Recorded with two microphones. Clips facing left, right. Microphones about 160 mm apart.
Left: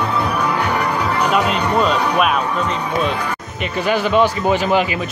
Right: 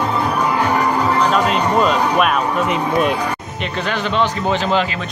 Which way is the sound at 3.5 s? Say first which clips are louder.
Left 6 dB; 5° left (ahead or behind).